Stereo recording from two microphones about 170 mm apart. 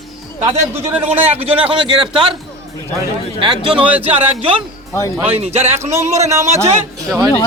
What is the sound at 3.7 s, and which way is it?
Speech, 10° right (ahead or behind).